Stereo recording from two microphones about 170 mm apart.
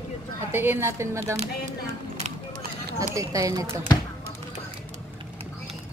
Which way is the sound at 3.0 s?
20° right (ahead or behind).